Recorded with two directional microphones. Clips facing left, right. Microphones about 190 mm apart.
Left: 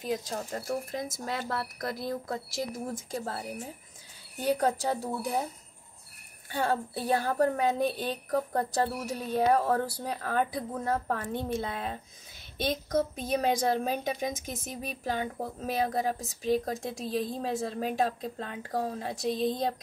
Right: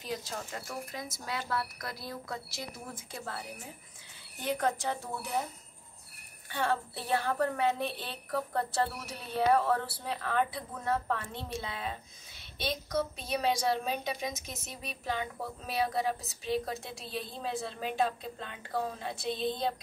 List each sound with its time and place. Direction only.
0.0 s a woman's voice: 40° left (ahead or behind)
6.5 s a woman's voice: 40° left (ahead or behind)